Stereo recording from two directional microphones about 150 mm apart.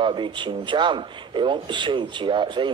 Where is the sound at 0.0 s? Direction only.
30° right (ahead or behind).